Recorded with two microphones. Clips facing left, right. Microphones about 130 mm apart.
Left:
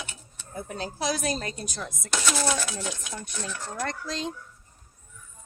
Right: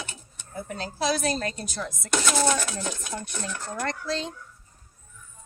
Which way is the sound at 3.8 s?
10° left (ahead or behind).